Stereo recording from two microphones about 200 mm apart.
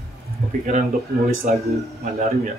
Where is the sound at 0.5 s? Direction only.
40° right (ahead or behind).